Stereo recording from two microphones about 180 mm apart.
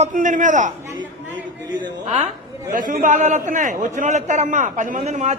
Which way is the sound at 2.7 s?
50° right (ahead or behind).